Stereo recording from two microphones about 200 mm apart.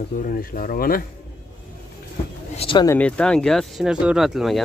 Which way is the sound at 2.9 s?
5° left (ahead or behind).